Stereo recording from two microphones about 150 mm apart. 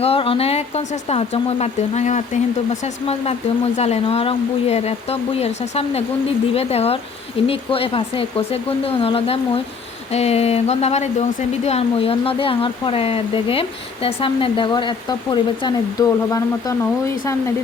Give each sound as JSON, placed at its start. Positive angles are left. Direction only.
{"t": 0.0, "sound": "speech", "side_deg": 40}